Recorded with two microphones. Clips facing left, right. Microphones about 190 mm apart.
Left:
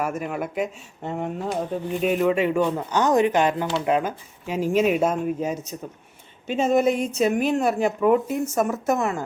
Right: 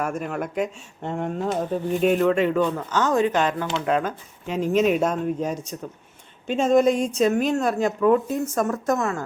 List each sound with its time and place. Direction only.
0.0 s speech: 5° left (ahead or behind)